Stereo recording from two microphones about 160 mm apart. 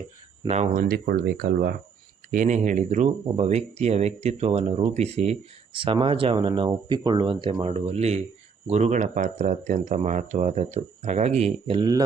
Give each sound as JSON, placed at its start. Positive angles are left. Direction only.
{"t": 0.4, "sound": "speech", "side_deg": -45}
{"t": 0.9, "sound": "speech", "side_deg": -70}
{"t": 2.3, "sound": "speech", "side_deg": -50}
{"t": 11.8, "sound": "speech", "side_deg": -25}